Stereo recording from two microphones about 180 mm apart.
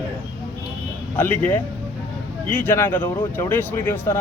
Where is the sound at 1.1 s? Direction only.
10° left (ahead or behind).